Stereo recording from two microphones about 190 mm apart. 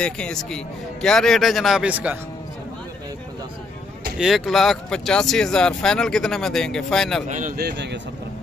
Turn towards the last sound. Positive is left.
turn(degrees=-65)  # may be behind; listen again after turning